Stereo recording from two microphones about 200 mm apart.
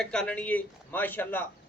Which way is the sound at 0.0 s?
5° left (ahead or behind).